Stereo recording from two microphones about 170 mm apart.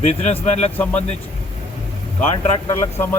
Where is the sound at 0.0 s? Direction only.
40° left (ahead or behind).